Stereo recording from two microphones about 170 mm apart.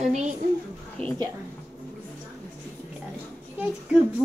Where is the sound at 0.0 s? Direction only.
40° right (ahead or behind).